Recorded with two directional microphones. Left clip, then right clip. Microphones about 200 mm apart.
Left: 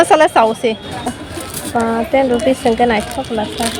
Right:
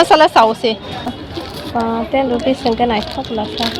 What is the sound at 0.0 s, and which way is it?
Speech, 15° left (ahead or behind).